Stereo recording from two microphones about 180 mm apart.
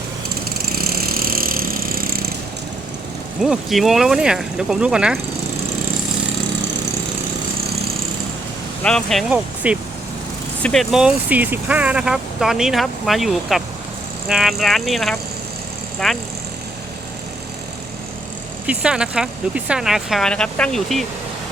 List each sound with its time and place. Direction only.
0.6 s vehicle: 60° right (ahead or behind)
3.4 s speech: centre (ahead or behind)
8.8 s speech: 5° left (ahead or behind)
9.6 s speech: 10° right (ahead or behind)
18.6 s speech: 5° right (ahead or behind)